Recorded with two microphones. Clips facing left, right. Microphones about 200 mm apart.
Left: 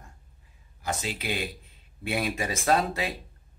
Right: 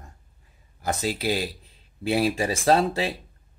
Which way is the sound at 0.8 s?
35° right (ahead or behind).